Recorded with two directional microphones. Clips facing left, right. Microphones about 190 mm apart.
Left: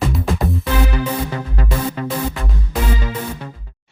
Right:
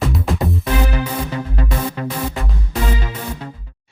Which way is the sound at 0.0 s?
Centre (ahead or behind).